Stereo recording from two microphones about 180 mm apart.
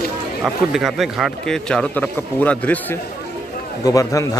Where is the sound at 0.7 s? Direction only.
Centre (ahead or behind).